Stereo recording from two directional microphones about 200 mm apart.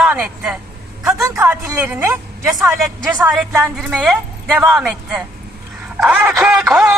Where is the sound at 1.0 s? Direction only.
10° right (ahead or behind).